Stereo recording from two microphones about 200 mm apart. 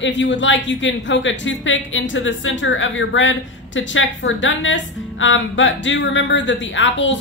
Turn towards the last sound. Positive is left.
turn(degrees=65)  # may be behind; listen again after turning